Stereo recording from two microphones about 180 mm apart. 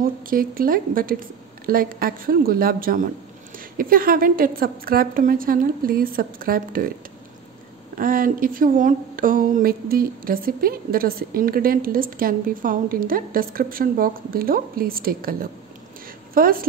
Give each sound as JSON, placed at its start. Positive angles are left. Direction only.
{"t": 0.0, "sound": "speech", "side_deg": -50}
{"t": 8.0, "sound": "speech", "side_deg": -50}
{"t": 16.3, "sound": "speech", "side_deg": -55}